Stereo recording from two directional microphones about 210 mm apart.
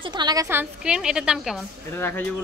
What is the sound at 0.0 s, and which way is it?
A woman's voice, 20° right (ahead or behind).